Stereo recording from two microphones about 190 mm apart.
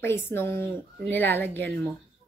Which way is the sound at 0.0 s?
10° left (ahead or behind).